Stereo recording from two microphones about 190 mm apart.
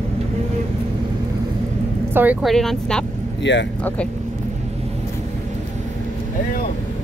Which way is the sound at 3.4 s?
70° left (ahead or behind).